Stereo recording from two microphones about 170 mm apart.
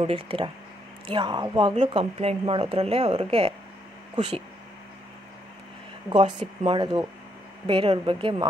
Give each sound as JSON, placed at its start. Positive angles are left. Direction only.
{"t": 0.0, "sound": "speech", "side_deg": -30}
{"t": 6.1, "sound": "speech", "side_deg": -30}